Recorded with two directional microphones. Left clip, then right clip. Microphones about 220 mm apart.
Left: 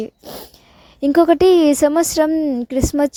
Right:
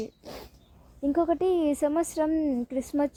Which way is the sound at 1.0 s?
45° left (ahead or behind).